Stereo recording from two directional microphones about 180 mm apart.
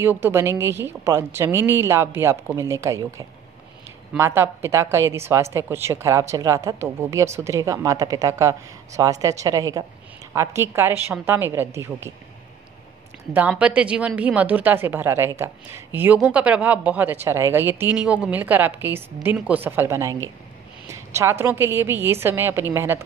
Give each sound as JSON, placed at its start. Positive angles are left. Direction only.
{"t": 0.0, "sound": "a woman's voice", "side_deg": -15}
{"t": 13.3, "sound": "a woman's voice", "side_deg": -10}